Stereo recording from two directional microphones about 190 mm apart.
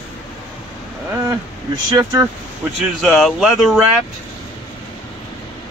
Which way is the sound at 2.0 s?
15° right (ahead or behind).